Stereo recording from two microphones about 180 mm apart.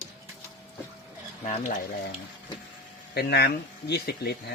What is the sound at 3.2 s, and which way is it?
Speech, 65° left (ahead or behind).